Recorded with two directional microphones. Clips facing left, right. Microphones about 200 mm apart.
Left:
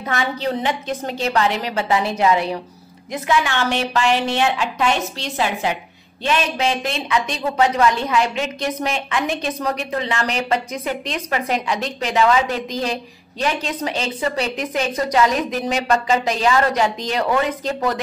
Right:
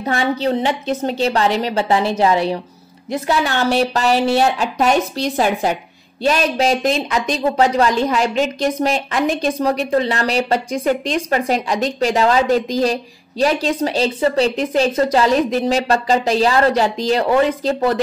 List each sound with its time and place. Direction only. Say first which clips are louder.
0.0 s a woman's voice: right 4 dB; 30° right (ahead or behind)